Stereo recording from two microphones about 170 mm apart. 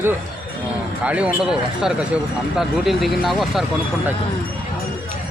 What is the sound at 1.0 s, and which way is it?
Speech, 5° right (ahead or behind).